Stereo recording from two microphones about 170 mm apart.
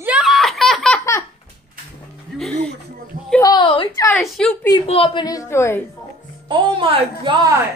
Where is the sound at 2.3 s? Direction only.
Centre (ahead or behind).